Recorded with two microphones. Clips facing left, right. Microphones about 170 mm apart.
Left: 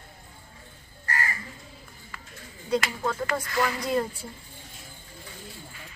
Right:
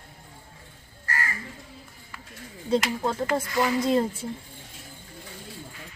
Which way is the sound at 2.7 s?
25° right (ahead or behind).